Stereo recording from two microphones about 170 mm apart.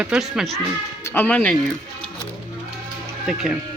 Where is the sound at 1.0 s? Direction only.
10° left (ahead or behind).